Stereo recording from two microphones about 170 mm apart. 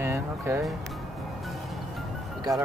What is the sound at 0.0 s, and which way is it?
Music, 15° right (ahead or behind).